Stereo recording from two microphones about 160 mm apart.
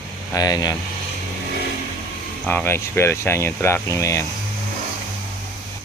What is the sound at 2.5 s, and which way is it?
Speech, 15° left (ahead or behind).